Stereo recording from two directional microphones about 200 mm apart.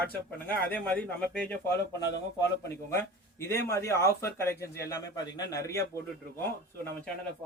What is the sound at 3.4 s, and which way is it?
Speech, 15° left (ahead or behind).